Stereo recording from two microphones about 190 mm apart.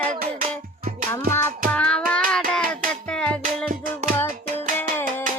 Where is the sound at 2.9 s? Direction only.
5° left (ahead or behind).